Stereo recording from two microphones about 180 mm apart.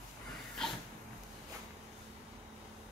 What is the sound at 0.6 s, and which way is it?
Dog, 5° left (ahead or behind).